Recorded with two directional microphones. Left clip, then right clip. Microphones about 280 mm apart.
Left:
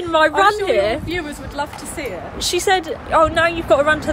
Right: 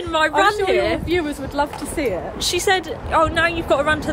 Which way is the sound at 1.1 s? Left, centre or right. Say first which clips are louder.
Right 4 dB; centre.